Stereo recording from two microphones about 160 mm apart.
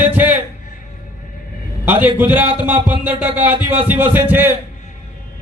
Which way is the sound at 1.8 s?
10° right (ahead or behind).